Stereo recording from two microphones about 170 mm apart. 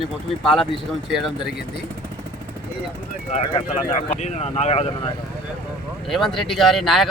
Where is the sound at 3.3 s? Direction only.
45° left (ahead or behind).